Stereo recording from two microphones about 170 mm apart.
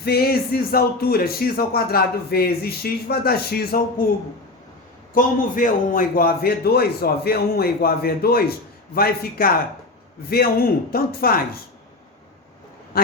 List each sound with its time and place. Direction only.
0.0 s speech: 65° left (ahead or behind)
5.1 s speech: 55° left (ahead or behind)